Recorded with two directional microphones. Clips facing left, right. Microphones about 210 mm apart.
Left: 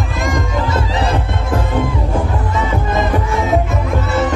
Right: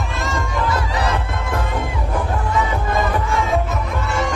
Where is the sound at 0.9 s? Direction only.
25° left (ahead or behind).